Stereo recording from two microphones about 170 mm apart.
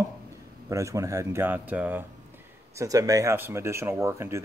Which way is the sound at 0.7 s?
20° right (ahead or behind).